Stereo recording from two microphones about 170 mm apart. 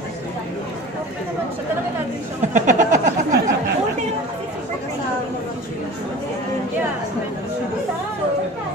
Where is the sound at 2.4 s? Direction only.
45° right (ahead or behind).